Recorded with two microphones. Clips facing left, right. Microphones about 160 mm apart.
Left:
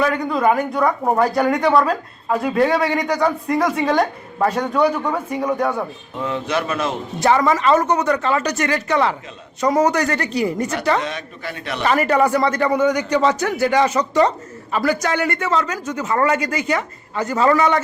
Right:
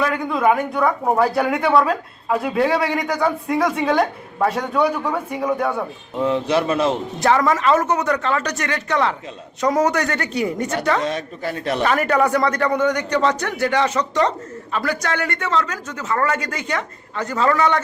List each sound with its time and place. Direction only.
0.0 s speech: centre (ahead or behind)
6.1 s a man's voice: 30° right (ahead or behind)
7.2 s speech: centre (ahead or behind)
11.0 s a man's voice: 40° right (ahead or behind)
11.8 s a man's voice: centre (ahead or behind)